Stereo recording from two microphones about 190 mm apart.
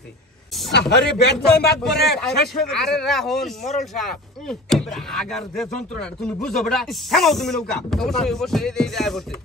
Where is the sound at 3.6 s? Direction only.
40° left (ahead or behind).